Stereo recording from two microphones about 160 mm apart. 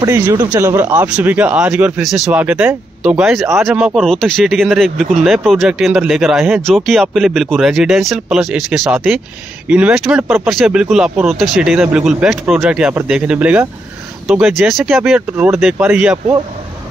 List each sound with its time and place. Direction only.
0.0 s speech: 20° right (ahead or behind); by 15.1 s centre (ahead or behind)
15.1 s speech: 10° right (ahead or behind)